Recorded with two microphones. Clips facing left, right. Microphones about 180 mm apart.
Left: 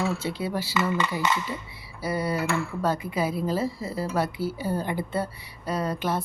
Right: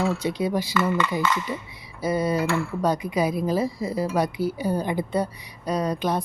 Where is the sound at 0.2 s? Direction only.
15° right (ahead or behind).